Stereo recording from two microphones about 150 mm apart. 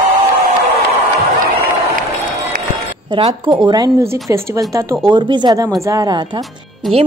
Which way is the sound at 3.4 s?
25° right (ahead or behind).